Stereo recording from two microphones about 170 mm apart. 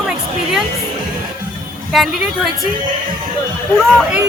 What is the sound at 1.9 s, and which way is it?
Speech, centre (ahead or behind).